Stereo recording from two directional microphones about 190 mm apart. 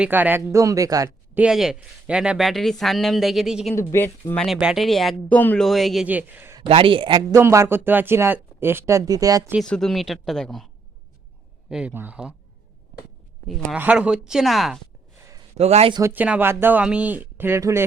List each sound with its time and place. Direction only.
0.0 s speech: 10° right (ahead or behind)
1.4 s speech: 5° right (ahead or behind)
3.8 s speech: 10° left (ahead or behind)
4.4 s speech: centre (ahead or behind)
6.6 s speech: 25° right (ahead or behind)
9.6 s speech: 5° left (ahead or behind)
11.7 s speech: 5° right (ahead or behind)
13.5 s speech: 5° right (ahead or behind)
15.5 s speech: 35° right (ahead or behind)
16.0 s speech: 10° right (ahead or behind)